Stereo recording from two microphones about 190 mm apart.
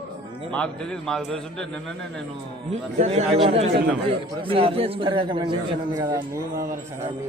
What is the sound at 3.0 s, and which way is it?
A man's voice, 35° right (ahead or behind).